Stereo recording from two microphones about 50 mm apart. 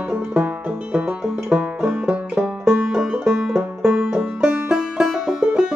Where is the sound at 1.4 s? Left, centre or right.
Centre.